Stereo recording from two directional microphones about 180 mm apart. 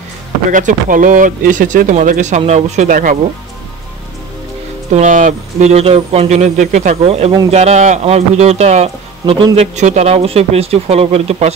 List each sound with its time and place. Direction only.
0.5 s speech: 45° right (ahead or behind)
4.9 s speech: 45° right (ahead or behind)